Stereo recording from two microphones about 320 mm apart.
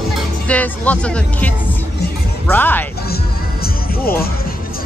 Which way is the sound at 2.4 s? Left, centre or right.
Centre.